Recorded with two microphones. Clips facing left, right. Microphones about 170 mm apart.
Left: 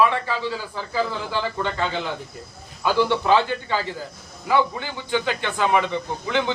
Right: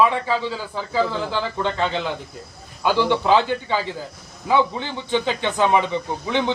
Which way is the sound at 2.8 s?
20° right (ahead or behind).